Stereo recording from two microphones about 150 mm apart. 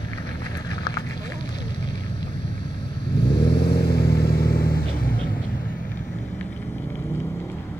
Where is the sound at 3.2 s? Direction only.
90° left.